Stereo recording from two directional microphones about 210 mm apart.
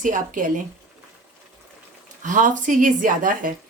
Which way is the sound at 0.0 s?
40° right (ahead or behind).